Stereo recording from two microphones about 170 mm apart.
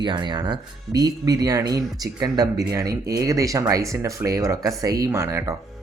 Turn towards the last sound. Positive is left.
turn(degrees=-15)  # may be behind; listen again after turning